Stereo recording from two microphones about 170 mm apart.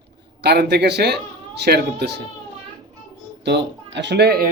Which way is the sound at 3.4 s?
85° right.